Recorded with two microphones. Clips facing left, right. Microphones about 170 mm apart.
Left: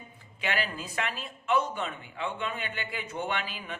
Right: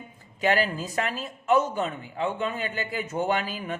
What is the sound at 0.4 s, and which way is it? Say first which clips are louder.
Speech: right 8 dB; 40° right (ahead or behind).